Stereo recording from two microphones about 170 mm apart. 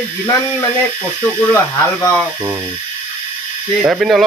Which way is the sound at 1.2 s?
10° left (ahead or behind).